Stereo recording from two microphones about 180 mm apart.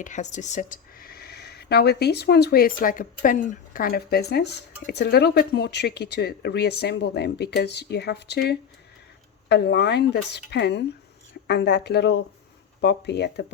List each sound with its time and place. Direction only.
0.0 s a woman's voice: 40° left (ahead or behind); by 13.4 s 70° left (ahead or behind)